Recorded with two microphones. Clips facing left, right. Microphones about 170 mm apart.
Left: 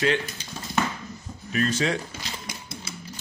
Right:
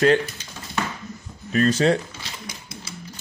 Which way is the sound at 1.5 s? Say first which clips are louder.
Right 6 dB; 35° right (ahead or behind).